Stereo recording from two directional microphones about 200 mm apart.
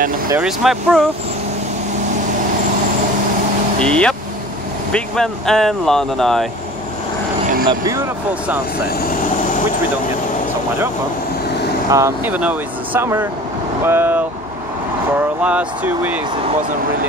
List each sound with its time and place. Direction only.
0.4 s speech: 5° right (ahead or behind)
3.8 s speech: 5° left (ahead or behind)
7.6 s speech: 15° right (ahead or behind)
11.9 s speech: 10° right (ahead or behind)
15.4 s speech: 5° right (ahead or behind)